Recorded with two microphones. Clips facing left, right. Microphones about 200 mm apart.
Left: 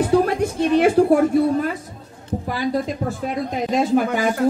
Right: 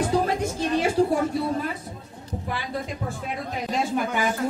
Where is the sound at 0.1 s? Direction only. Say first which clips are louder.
Left 6 dB; 60° left (ahead or behind).